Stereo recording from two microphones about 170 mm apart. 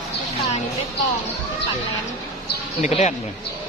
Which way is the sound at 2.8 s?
40° left (ahead or behind).